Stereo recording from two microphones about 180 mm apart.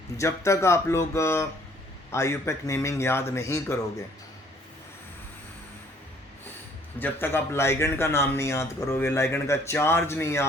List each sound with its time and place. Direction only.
0.2 s speech: 15° left (ahead or behind)
7.0 s speech: 10° left (ahead or behind)